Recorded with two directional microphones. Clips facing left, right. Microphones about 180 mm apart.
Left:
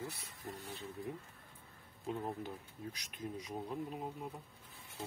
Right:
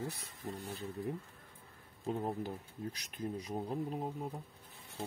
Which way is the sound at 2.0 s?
40° right (ahead or behind).